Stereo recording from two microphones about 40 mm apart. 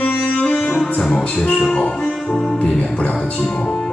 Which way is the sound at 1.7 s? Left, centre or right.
Left.